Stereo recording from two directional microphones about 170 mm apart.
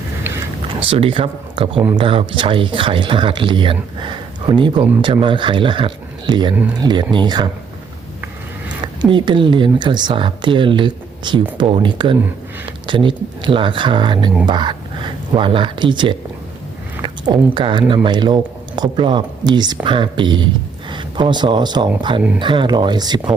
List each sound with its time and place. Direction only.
0.3 s a sound: 15° right (ahead or behind)
0.9 s speech: 30° right (ahead or behind)
9.0 s speech: 30° right (ahead or behind)